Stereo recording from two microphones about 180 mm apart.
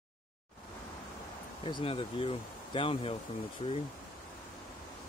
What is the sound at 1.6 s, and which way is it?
Speech, 30° left (ahead or behind).